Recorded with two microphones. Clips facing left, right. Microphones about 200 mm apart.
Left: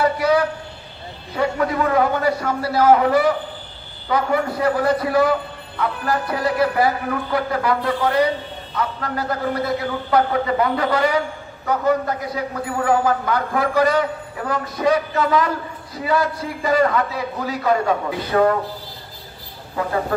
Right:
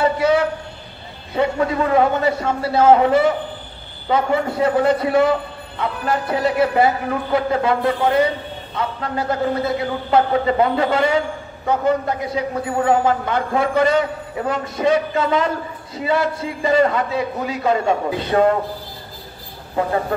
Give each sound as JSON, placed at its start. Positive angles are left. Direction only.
{"t": 0.0, "sound": "a man's voice", "side_deg": -25}